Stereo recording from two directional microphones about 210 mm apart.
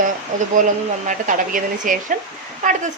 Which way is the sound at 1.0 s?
40° right (ahead or behind).